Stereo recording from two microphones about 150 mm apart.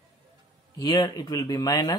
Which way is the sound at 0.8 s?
25° left (ahead or behind).